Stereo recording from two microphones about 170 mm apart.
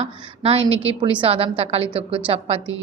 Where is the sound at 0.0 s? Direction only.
35° right (ahead or behind).